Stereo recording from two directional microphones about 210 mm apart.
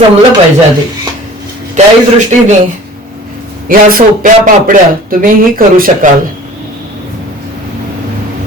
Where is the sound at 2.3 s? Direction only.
35° right (ahead or behind).